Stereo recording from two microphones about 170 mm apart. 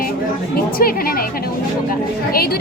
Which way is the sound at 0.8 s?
60° left (ahead or behind).